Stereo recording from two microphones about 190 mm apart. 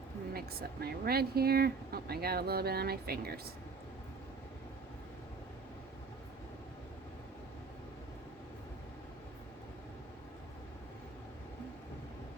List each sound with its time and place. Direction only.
0.3 s speech: 55° right (ahead or behind)